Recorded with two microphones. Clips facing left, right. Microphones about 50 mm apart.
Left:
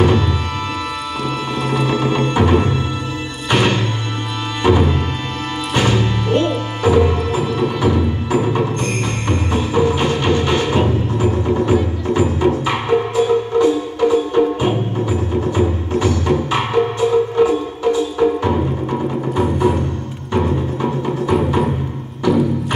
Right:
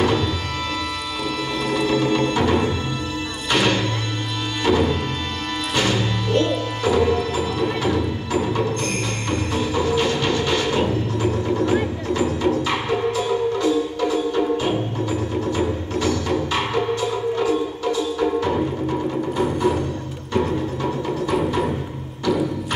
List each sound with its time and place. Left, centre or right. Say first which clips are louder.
0.0 s music: left 4 dB; centre
1.9 s music: left 2 dB; centre
20.3 s music: left 3 dB; centre